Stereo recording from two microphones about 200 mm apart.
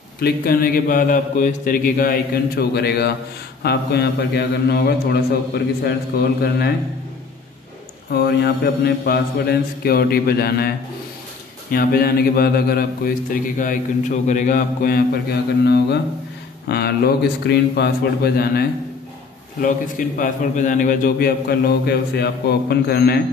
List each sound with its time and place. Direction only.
0.2 s a man's voice: 45° left (ahead or behind)
8.1 s a man's voice: 50° left (ahead or behind)
11.7 s a man's voice: 50° left (ahead or behind)